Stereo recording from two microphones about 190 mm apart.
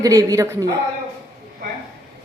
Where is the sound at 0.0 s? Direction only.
20° right (ahead or behind).